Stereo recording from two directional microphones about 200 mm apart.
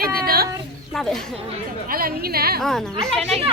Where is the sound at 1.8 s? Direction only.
45° right (ahead or behind).